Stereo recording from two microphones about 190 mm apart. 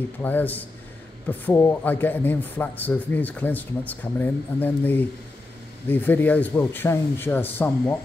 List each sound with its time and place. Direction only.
0.2 s a man's voice: 10° left (ahead or behind)